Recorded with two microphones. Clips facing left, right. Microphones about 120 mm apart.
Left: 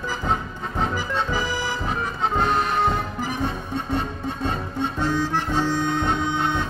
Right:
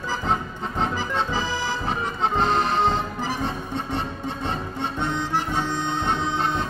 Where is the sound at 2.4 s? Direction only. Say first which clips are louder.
Even; 25° right (ahead or behind).